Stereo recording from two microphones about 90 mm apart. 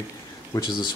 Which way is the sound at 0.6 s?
60° left (ahead or behind).